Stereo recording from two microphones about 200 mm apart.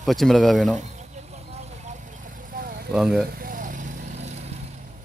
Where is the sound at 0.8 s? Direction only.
35° right (ahead or behind).